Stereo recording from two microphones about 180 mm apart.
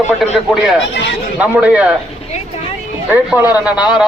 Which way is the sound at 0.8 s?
80° left.